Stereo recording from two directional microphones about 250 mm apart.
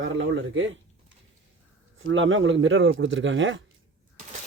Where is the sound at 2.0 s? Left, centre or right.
Right.